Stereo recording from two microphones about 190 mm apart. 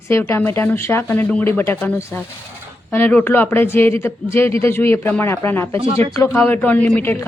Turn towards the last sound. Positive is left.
turn(degrees=10)  # may be behind; listen again after turning